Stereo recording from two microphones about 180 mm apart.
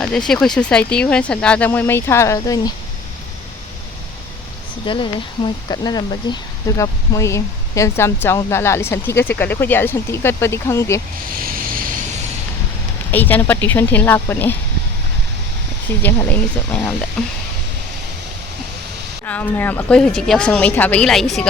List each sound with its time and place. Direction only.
0.0 s speech: 5° left (ahead or behind)
4.9 s speech: 25° left (ahead or behind)
11.4 s vehicle: 50° right (ahead or behind)
13.1 s speech: 10° left (ahead or behind)
16.0 s speech: 10° left (ahead or behind)
19.2 s speech: 10° left (ahead or behind)